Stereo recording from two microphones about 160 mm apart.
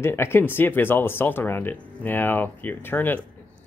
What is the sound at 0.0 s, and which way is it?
Speech, 15° left (ahead or behind).